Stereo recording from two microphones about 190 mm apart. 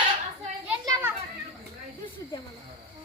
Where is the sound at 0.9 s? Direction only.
20° right (ahead or behind).